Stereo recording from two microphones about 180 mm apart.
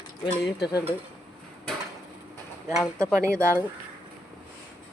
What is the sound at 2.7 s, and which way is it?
Speech, centre (ahead or behind).